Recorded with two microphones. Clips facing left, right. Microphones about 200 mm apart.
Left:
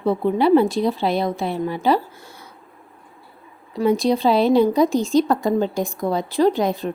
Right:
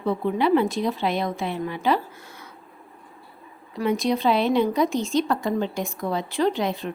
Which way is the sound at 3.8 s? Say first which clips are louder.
Left 5 dB; 30° left (ahead or behind).